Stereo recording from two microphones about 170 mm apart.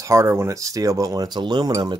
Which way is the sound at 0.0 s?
15° right (ahead or behind).